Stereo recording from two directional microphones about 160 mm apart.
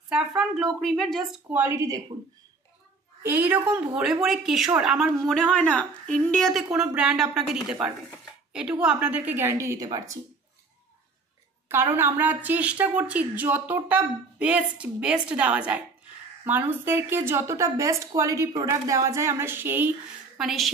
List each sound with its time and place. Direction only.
0.1 s a sound: 5° right (ahead or behind)
0.7 s a woman's voice: centre (ahead or behind)
1.5 s a woman's voice: 15° right (ahead or behind)
3.2 s a woman's voice: 10° right (ahead or behind)
8.5 s a woman's voice: 5° right (ahead or behind); by 10.1 s 25° right (ahead or behind)
11.7 s a woman's voice: 15° right (ahead or behind)
20.3 s a woman's voice: centre (ahead or behind)